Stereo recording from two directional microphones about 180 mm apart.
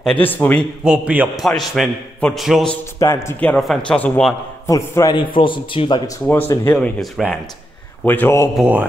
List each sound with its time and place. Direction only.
0.0 s a man's voice: 10° left (ahead or behind)
0.8 s a man's voice: 10° right (ahead or behind)
3.0 s a man's voice: 15° left (ahead or behind)
4.6 s a man's voice: 15° left (ahead or behind)
6.2 s a man's voice: 10° left (ahead or behind)
8.5 s a man's voice: 10° right (ahead or behind)